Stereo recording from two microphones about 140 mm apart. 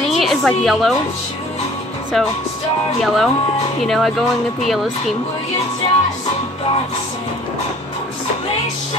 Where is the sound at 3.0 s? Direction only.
Centre (ahead or behind).